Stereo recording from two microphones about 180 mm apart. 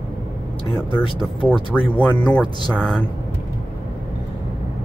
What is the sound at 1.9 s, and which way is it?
Speech, 10° left (ahead or behind).